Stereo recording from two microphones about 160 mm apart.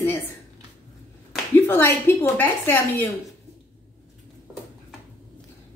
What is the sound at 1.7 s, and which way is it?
A woman's voice, 15° left (ahead or behind).